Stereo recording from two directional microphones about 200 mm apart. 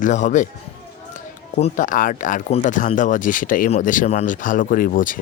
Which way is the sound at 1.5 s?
35° left (ahead or behind).